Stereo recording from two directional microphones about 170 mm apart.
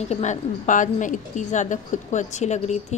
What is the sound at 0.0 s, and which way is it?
A woman's voice, 40° left (ahead or behind).